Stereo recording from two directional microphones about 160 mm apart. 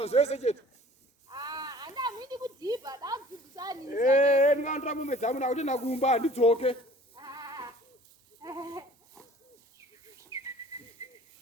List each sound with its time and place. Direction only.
0.0 s speech: 40° left (ahead or behind)
1.3 s a sound: 25° right (ahead or behind)
3.8 s speech: 55° left (ahead or behind)
7.2 s sheep: 25° right (ahead or behind)
8.4 s goat: 25° right (ahead or behind)
10.3 s whistling: 20° right (ahead or behind)
11.0 s a sound: 20° right (ahead or behind)